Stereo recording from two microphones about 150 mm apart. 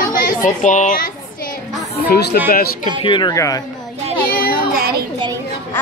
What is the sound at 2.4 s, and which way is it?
Speech, 90° left.